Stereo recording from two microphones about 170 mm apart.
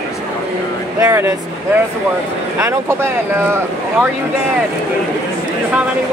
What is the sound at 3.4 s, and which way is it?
Speech, 15° right (ahead or behind).